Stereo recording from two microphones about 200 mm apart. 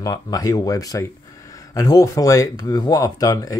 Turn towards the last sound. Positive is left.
turn(degrees=20)  # may be behind; listen again after turning